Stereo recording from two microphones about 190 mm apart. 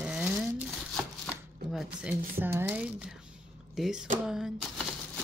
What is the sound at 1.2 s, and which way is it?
Chopping, centre (ahead or behind).